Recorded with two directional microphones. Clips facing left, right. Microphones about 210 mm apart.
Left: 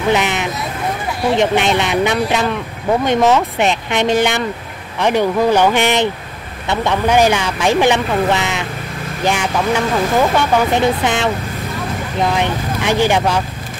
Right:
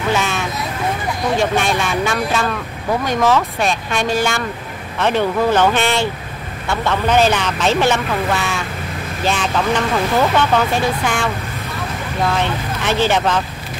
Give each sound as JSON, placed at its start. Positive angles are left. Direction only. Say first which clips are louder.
{"t": 0.1, "sound": "vehicle", "louder": "left 3 dB", "side_deg": 20}
{"t": 1.3, "sound": "speech", "louder": "left 3 dB", "side_deg": 20}